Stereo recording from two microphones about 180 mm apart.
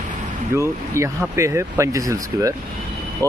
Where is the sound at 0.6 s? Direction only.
15° right (ahead or behind).